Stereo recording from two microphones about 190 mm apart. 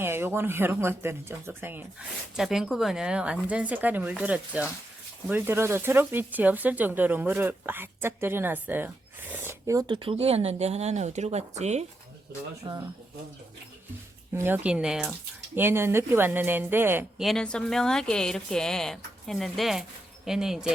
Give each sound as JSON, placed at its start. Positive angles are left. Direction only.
{"t": 0.0, "sound": "speech", "side_deg": -10}
{"t": 12.7, "sound": "speech", "side_deg": -25}
{"t": 14.3, "sound": "a woman's voice", "side_deg": -10}